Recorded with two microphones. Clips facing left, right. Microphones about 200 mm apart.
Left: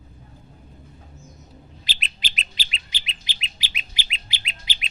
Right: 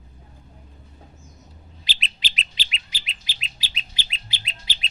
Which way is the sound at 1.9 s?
50° left (ahead or behind).